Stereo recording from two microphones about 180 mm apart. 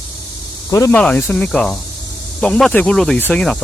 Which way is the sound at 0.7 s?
10° left (ahead or behind).